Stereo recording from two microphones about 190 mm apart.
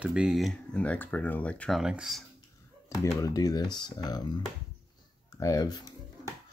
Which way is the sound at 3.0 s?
15° left (ahead or behind).